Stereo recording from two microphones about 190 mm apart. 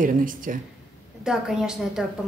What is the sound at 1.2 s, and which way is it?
Speech, 5° right (ahead or behind).